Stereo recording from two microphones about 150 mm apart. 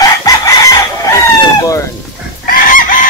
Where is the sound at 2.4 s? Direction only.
65° left (ahead or behind).